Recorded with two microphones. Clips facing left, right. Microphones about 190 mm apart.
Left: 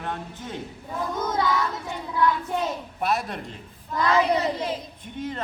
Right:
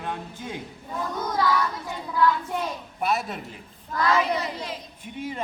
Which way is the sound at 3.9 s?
25° left (ahead or behind).